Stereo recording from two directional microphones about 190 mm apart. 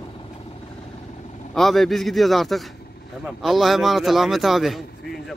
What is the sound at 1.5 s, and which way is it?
Speech, centre (ahead or behind).